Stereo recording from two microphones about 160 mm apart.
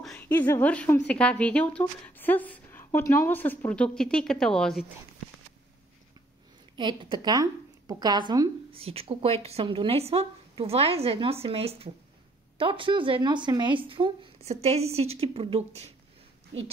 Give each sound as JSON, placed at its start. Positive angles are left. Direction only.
{"t": 0.0, "sound": "a woman's voice", "side_deg": 10}
{"t": 6.8, "sound": "a woman's voice", "side_deg": -30}